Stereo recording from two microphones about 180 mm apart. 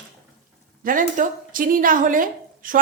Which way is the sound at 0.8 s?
50° right (ahead or behind).